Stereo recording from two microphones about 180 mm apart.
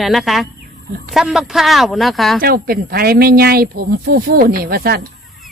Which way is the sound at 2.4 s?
55° right (ahead or behind).